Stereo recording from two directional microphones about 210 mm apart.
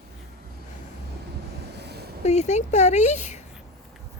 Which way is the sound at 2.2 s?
30° left (ahead or behind).